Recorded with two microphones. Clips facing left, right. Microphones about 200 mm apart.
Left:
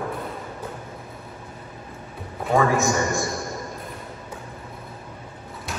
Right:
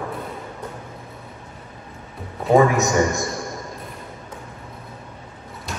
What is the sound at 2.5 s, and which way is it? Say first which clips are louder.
Speech: right 4 dB; 20° right (ahead or behind).